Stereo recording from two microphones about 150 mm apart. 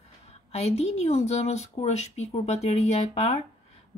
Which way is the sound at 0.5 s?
45° left (ahead or behind).